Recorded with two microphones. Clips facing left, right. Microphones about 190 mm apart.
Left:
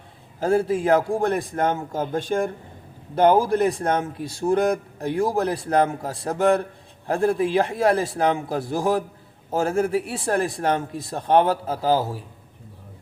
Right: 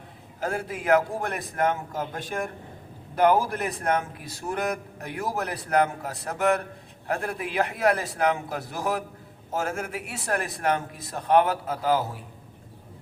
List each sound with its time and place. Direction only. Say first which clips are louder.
0.3 s a man's voice: left 10 dB; 30° left (ahead or behind)